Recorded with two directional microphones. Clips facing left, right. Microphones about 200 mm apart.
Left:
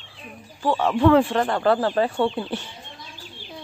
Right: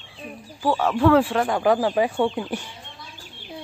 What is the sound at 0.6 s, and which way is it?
Speech, 5° right (ahead or behind).